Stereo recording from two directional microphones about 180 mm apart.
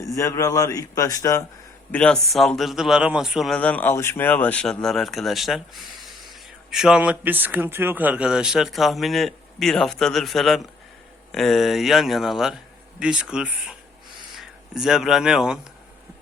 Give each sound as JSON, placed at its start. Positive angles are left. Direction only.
{"t": 0.0, "sound": "a man's voice", "side_deg": 15}
{"t": 1.9, "sound": "speech", "side_deg": 5}
{"t": 6.7, "sound": "speech", "side_deg": -5}